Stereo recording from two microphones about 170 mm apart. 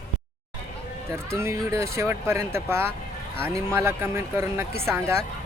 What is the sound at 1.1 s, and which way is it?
Speech, 15° right (ahead or behind).